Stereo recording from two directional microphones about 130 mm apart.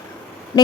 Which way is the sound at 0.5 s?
25° left (ahead or behind).